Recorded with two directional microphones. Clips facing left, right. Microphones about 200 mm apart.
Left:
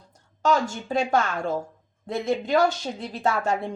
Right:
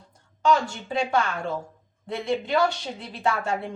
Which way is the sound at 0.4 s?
45° left (ahead or behind).